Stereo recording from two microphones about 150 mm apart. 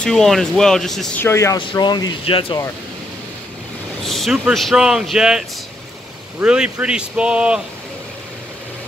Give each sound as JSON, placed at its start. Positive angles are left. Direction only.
{"t": 0.0, "sound": "speech", "side_deg": 0}
{"t": 1.2, "sound": "speech", "side_deg": 20}
{"t": 1.7, "sound": "speech", "side_deg": 30}
{"t": 4.0, "sound": "speech", "side_deg": 0}
{"t": 6.4, "sound": "speech", "side_deg": -5}